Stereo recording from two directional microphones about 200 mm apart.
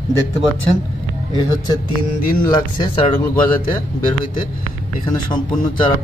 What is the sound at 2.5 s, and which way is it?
Speech, 20° left (ahead or behind).